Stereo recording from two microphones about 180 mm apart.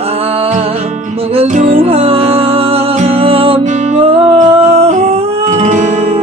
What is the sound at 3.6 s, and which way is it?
Music, 40° right (ahead or behind).